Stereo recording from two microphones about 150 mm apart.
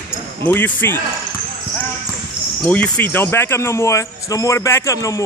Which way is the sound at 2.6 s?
10° left (ahead or behind).